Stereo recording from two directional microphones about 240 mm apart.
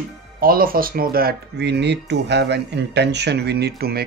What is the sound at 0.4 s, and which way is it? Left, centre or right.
Speech, right.